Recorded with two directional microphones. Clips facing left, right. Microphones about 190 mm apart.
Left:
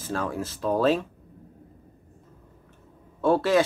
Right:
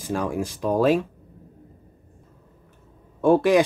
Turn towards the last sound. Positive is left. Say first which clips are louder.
# right 4 dB
turn(degrees=-15)  # may be behind; listen again after turning